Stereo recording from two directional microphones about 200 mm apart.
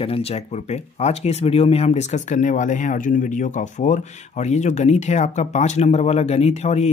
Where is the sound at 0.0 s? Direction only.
30° left (ahead or behind).